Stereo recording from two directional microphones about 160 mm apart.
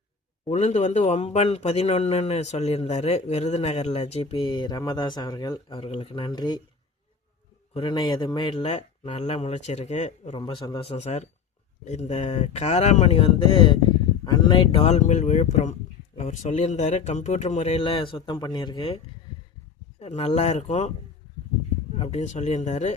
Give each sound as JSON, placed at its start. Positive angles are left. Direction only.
{"t": 0.4, "sound": "speech", "side_deg": 45}
{"t": 7.7, "sound": "speech", "side_deg": 30}
{"t": 10.3, "sound": "speech", "side_deg": 35}
{"t": 20.0, "sound": "speech", "side_deg": 40}
{"t": 21.9, "sound": "speech", "side_deg": 40}